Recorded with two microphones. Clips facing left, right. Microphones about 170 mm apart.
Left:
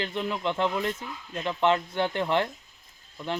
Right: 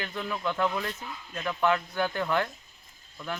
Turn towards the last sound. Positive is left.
turn(degrees=25)  # may be behind; listen again after turning